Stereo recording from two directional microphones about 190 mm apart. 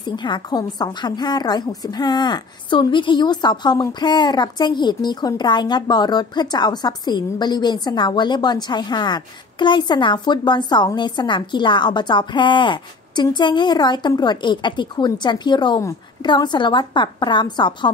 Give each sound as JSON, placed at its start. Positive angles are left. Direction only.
{"t": 0.0, "sound": "speech", "side_deg": 25}